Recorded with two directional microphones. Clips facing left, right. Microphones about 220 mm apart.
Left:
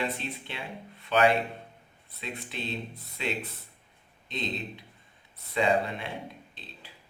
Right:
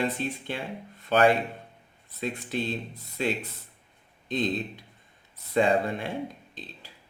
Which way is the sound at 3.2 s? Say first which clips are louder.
Right 5 dB; 45° right (ahead or behind).